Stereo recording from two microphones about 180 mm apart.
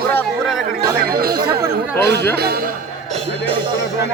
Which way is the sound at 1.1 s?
55° right (ahead or behind).